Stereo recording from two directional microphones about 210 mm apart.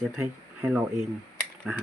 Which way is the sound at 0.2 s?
10° right (ahead or behind).